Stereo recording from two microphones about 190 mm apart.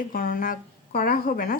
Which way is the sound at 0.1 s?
50° left (ahead or behind).